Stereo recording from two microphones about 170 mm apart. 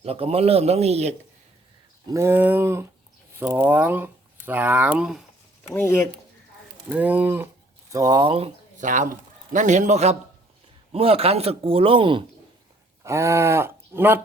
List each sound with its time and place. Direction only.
0.0 s speech: 35° right (ahead or behind)
2.0 s a sound: 15° right (ahead or behind)
3.3 s speech: 15° right (ahead or behind)
5.7 s speech: 15° left (ahead or behind)
6.8 s speech: 10° right (ahead or behind); by 12.2 s 30° right (ahead or behind)
13.0 s speech: 15° right (ahead or behind)